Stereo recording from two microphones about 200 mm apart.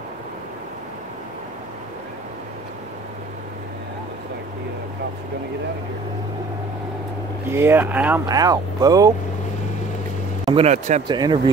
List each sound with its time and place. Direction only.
7.4 s speech: 10° right (ahead or behind)
10.4 s speech: 30° right (ahead or behind)
11.1 s speech: 20° right (ahead or behind)